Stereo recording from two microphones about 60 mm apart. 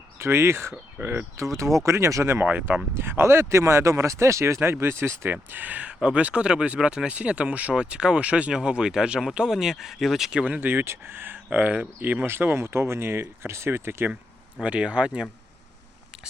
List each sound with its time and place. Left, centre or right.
0.2 s speech: right
1.5 s speech: right
2.4 s speech: right
2.9 s speech: right; by 10.4 s centre
10.4 s speech: right
10.7 s speech: right
11.4 s speech: right
11.9 s speech: right
14.6 s speech: right